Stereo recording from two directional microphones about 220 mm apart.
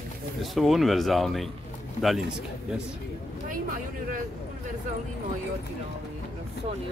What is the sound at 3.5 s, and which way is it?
Vehicle, 40° right (ahead or behind).